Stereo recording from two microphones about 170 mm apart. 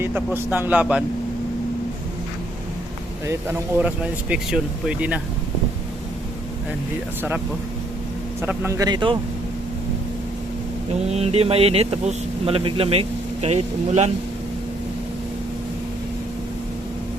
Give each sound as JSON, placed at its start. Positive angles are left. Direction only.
{"t": 0.0, "sound": "speech", "side_deg": -10}
{"t": 3.2, "sound": "speech", "side_deg": -15}
{"t": 7.2, "sound": "speech", "side_deg": -10}
{"t": 11.1, "sound": "speech", "side_deg": -35}